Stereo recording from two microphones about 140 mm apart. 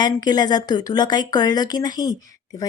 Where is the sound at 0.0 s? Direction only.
30° left (ahead or behind).